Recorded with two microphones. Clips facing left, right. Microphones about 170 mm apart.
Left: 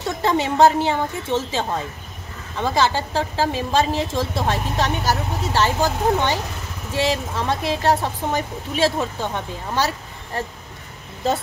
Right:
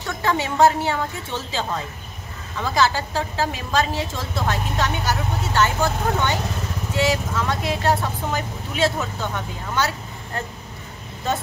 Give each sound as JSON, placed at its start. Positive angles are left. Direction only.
{"t": 0.2, "sound": "a woman's voice", "side_deg": 25}